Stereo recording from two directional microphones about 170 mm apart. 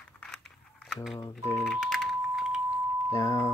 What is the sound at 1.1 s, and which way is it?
Speech, 15° left (ahead or behind).